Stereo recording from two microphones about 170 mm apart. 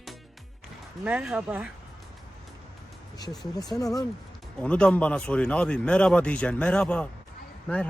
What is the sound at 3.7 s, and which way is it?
Speech, 20° left (ahead or behind).